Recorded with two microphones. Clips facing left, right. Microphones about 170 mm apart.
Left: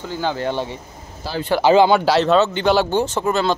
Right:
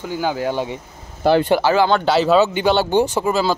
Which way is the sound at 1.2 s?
60° right (ahead or behind).